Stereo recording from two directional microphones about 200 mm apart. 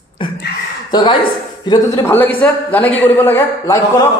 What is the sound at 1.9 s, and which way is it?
A man's voice, 10° left (ahead or behind).